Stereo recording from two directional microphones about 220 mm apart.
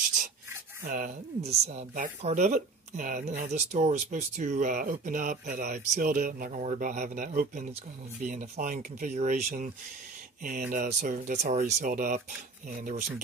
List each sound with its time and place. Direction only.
0.8 s speech: 35° right (ahead or behind)